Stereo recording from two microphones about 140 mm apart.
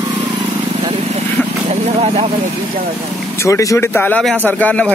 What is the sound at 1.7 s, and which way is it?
Vehicle, 50° right (ahead or behind).